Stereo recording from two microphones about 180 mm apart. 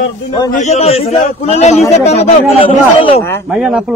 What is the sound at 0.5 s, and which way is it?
A man's voice, 40° left (ahead or behind).